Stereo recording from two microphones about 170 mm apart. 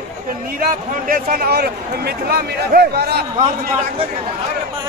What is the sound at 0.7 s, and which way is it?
Speech, 55° right (ahead or behind).